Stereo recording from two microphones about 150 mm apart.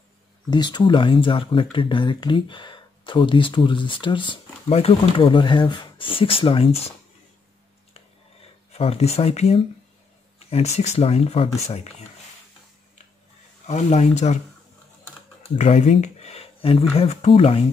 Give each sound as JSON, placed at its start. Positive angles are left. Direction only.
{"t": 0.5, "sound": "speech", "side_deg": 30}
{"t": 8.7, "sound": "speech", "side_deg": 45}
{"t": 13.7, "sound": "speech", "side_deg": 50}
{"t": 15.5, "sound": "speech", "side_deg": 50}